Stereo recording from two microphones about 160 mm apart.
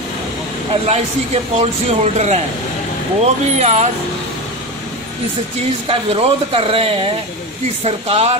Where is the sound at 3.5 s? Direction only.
45° right (ahead or behind).